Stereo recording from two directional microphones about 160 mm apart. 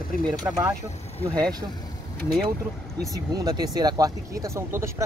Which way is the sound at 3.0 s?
25° right (ahead or behind).